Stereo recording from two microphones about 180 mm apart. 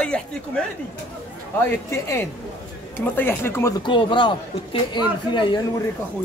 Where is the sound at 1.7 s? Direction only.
15° left (ahead or behind).